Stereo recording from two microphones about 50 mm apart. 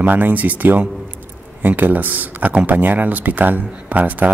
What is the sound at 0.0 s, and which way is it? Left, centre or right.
A man's voice, right.